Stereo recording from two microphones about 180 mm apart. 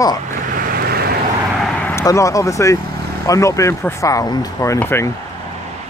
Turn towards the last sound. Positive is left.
turn(degrees=15)  # may be behind; listen again after turning